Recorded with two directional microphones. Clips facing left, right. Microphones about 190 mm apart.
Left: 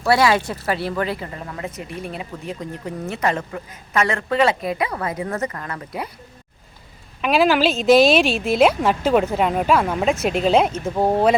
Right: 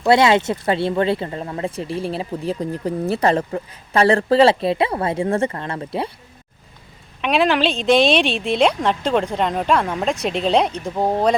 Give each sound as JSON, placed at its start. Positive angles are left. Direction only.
{"t": 0.0, "sound": "speech", "side_deg": -20}
{"t": 7.2, "sound": "a woman's voice", "side_deg": 0}